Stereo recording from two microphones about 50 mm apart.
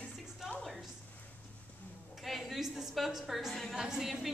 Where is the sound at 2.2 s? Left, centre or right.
Centre.